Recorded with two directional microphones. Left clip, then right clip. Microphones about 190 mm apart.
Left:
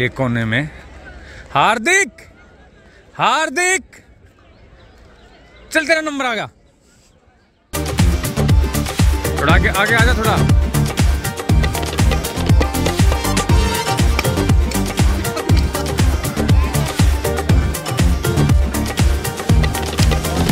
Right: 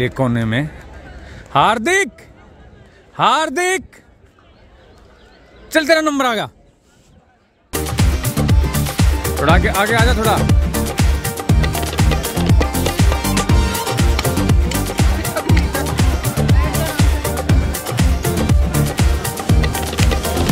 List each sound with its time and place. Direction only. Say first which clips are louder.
0.0 s a man's voice: even; 5° right (ahead or behind)
5.7 s a man's voice: right 2 dB; 20° right (ahead or behind)
7.7 s music: even; centre (ahead or behind)